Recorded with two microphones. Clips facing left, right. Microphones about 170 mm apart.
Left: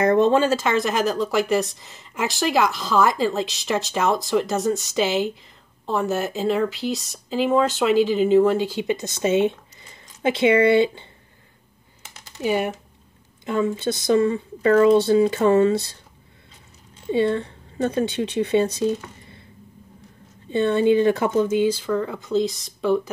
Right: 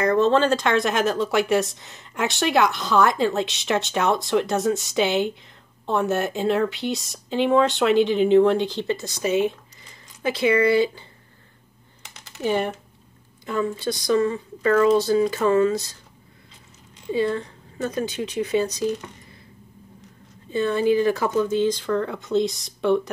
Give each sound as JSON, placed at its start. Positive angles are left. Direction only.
{"t": 0.0, "sound": "speech", "side_deg": 25}
{"t": 0.3, "sound": "speech", "side_deg": 5}
{"t": 12.4, "sound": "speech", "side_deg": 10}
{"t": 13.5, "sound": "speech", "side_deg": 25}
{"t": 17.1, "sound": "speech", "side_deg": 25}
{"t": 20.5, "sound": "speech", "side_deg": 25}